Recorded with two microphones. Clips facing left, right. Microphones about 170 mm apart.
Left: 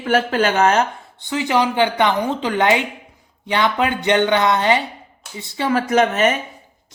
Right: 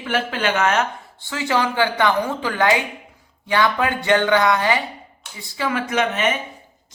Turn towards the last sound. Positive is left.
turn(degrees=40)  # may be behind; listen again after turning